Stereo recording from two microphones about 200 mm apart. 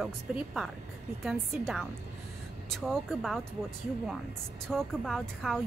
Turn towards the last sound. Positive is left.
turn(degrees=0)  # may be behind; listen again after turning